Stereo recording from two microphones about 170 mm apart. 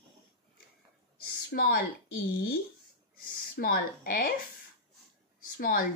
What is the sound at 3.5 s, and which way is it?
Speech, 55° left (ahead or behind).